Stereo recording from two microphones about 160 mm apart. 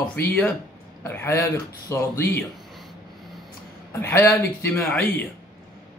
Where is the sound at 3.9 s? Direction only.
15° left (ahead or behind).